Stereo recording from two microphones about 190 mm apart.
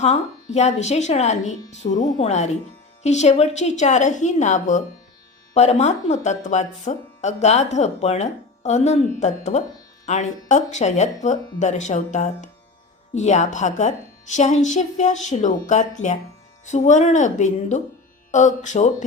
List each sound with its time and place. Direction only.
0.0 s speech: 35° left (ahead or behind)